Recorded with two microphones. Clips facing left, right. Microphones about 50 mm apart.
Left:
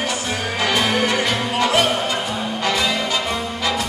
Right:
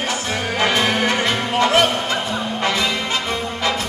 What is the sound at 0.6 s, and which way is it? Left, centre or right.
Music, right.